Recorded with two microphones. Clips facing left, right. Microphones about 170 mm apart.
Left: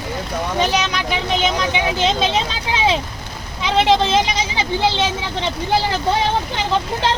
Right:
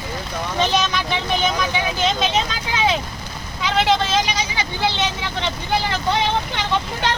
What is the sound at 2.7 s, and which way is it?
Vehicle, 25° left (ahead or behind).